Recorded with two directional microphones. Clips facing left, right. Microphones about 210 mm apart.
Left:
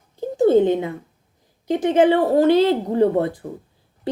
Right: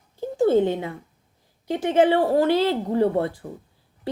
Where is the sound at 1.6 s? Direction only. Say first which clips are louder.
Left 3 dB; 20° left (ahead or behind).